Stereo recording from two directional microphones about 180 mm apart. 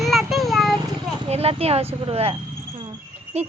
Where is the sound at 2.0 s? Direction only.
30° right (ahead or behind).